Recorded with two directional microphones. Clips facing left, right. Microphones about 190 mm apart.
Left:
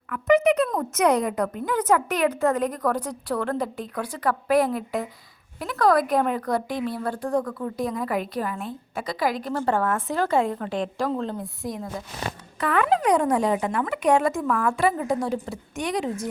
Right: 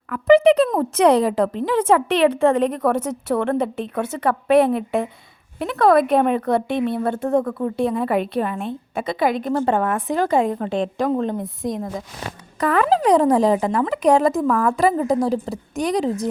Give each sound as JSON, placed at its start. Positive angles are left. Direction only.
{"t": 0.1, "sound": "speech", "side_deg": -30}
{"t": 12.5, "sound": "speech", "side_deg": -40}